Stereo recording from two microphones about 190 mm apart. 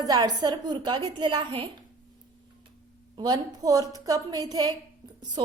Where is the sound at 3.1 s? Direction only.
20° right (ahead or behind).